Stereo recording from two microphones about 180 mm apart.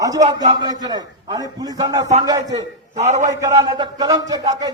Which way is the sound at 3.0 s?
40° right (ahead or behind).